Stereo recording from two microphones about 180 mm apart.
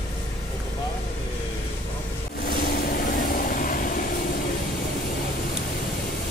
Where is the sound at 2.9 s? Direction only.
50° left (ahead or behind).